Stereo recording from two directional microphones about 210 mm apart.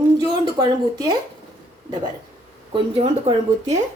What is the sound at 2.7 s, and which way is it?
Speech, 25° right (ahead or behind).